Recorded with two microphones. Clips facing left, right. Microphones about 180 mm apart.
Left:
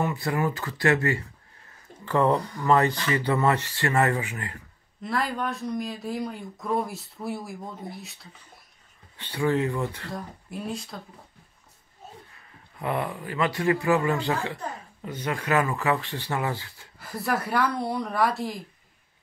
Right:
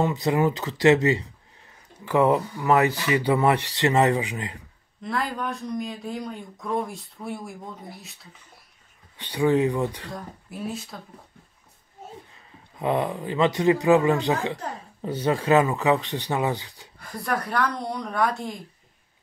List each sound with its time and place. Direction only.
0.0 s speech: 20° right (ahead or behind)
5.0 s speech: centre (ahead or behind)
9.1 s speech: 15° right (ahead or behind)
10.1 s speech: 5° right (ahead or behind)
12.7 s speech: 20° right (ahead or behind)
15.0 s speech: 30° right (ahead or behind)
17.0 s speech: 5° left (ahead or behind)